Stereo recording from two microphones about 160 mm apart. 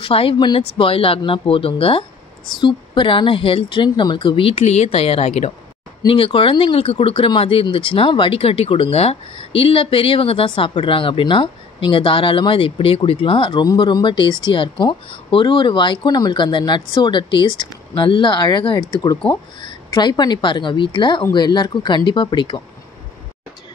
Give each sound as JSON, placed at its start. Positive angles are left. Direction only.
{"t": 0.0, "sound": "speech", "side_deg": 35}